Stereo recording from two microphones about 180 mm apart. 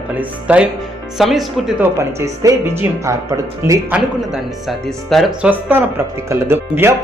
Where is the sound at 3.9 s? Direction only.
Centre (ahead or behind).